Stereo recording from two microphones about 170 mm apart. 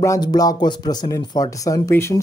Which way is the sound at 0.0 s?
20° left (ahead or behind).